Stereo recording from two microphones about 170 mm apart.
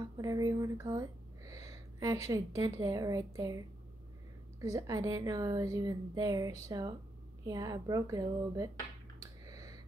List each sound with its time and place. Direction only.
0.0 s a sound: 20° right (ahead or behind)
2.2 s a woman's voice: 20° right (ahead or behind)
4.7 s a woman's voice: 20° right (ahead or behind)
9.2 s finger snapping: 20° right (ahead or behind)